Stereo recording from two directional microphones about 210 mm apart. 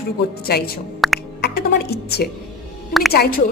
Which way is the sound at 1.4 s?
50° left (ahead or behind).